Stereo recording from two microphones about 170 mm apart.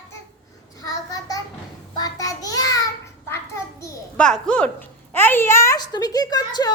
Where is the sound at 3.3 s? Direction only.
15° left (ahead or behind).